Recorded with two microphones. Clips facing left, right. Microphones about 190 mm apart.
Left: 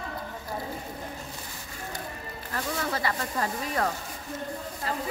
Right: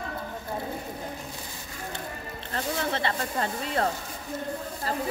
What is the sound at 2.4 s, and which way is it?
Snake, 30° right (ahead or behind).